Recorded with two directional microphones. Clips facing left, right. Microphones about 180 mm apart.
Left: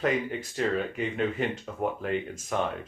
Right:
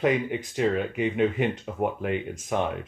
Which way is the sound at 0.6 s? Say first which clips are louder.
Right 3 dB; 15° right (ahead or behind).